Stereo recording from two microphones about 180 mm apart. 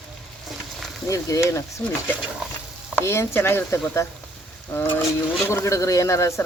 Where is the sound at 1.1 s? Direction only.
15° left (ahead or behind).